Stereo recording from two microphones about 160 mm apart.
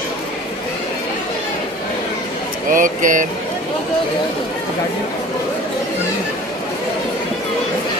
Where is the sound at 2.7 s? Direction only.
55° right (ahead or behind).